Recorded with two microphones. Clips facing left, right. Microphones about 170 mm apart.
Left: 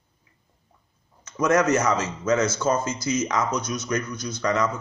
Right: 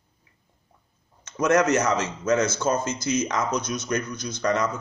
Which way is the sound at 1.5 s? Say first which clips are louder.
Even; 20° right (ahead or behind).